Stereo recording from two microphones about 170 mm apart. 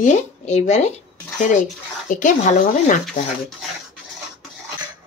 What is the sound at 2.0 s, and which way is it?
Speech, 45° left (ahead or behind).